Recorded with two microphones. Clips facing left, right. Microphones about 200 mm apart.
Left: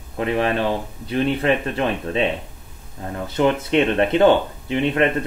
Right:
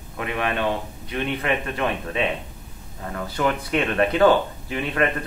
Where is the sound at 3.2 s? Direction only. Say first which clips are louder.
Left 5 dB; 25° left (ahead or behind).